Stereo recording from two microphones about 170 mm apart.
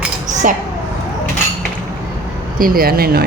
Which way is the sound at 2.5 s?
60° right (ahead or behind).